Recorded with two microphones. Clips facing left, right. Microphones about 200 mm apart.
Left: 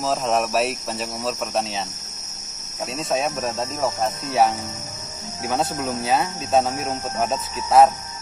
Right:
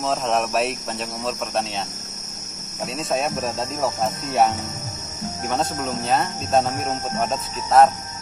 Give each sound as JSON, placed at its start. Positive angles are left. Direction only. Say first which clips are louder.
{"t": 0.0, "sound": "speech", "louder": "left 1 dB", "side_deg": 0}
{"t": 3.0, "sound": "speech", "louder": "even", "side_deg": 0}